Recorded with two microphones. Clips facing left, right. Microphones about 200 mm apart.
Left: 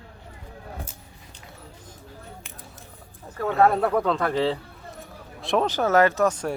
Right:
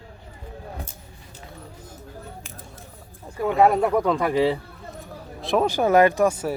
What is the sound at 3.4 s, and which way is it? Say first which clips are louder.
Speech: right 2 dB; 15° right (ahead or behind).